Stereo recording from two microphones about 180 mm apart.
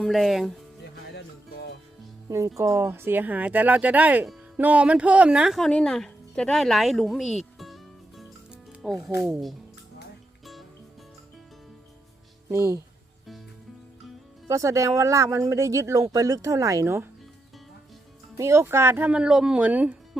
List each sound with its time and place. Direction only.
0.0 s speech: centre (ahead or behind)
1.1 s music: 70° left (ahead or behind)
2.6 s speech: 15° right (ahead or behind); by 9.6 s centre (ahead or behind)
12.5 s speech: 15° right (ahead or behind)
14.4 s speech: 15° right (ahead or behind)
18.3 s speech: 15° right (ahead or behind)